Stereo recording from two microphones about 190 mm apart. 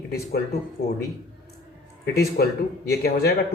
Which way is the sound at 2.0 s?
55° left (ahead or behind).